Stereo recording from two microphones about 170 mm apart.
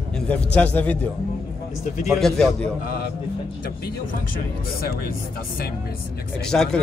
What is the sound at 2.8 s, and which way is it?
Speech, 60° left (ahead or behind).